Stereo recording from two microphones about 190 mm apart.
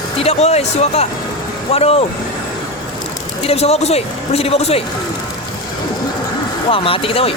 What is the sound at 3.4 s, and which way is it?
Speech, 30° left (ahead or behind).